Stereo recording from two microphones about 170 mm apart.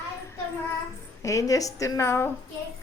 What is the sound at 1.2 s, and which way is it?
A woman's voice, 20° left (ahead or behind).